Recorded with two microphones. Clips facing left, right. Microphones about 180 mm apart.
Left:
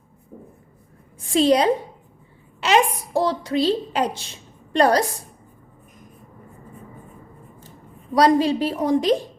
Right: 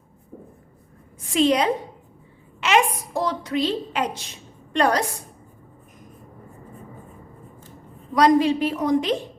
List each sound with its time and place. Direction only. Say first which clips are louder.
1.3 s a woman's voice: left 2 dB; 35° left (ahead or behind)
8.1 s a woman's voice: even; 35° left (ahead or behind)